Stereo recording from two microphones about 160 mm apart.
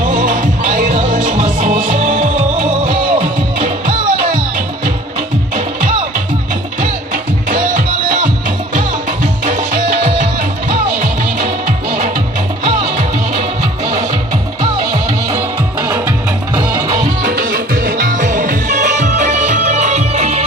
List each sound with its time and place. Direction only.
0.0 s music: 55° right (ahead or behind)
7.1 s music: 55° right (ahead or behind)
16.7 s music: 20° right (ahead or behind)
17.0 s music: 55° right (ahead or behind); by 20.4 s 40° right (ahead or behind)